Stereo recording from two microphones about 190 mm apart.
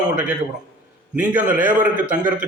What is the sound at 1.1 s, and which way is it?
Speech, 10° right (ahead or behind).